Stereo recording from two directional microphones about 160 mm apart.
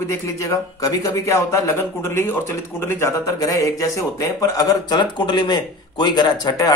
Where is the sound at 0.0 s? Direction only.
20° left (ahead or behind).